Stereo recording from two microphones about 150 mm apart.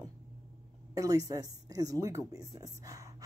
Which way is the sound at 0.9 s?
25° right (ahead or behind).